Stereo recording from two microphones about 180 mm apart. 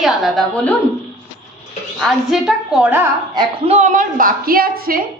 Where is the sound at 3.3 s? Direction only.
35° right (ahead or behind); by 5.0 s 55° right (ahead or behind).